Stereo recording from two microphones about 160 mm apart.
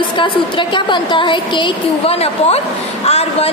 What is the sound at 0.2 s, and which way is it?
A woman's voice, 30° left (ahead or behind).